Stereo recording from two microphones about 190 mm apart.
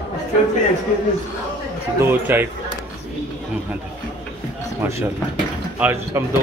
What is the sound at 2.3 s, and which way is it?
Speech, 10° right (ahead or behind).